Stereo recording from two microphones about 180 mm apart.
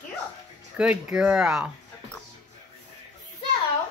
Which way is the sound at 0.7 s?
5° right (ahead or behind).